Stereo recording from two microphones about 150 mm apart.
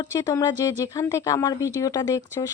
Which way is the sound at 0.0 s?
25° left (ahead or behind).